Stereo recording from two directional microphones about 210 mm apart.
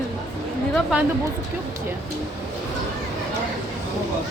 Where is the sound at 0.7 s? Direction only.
5° right (ahead or behind).